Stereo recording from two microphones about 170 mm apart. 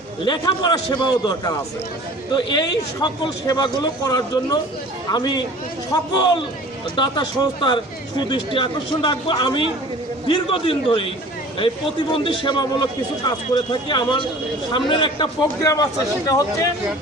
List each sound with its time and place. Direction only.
0.3 s a man's voice: 25° left (ahead or behind)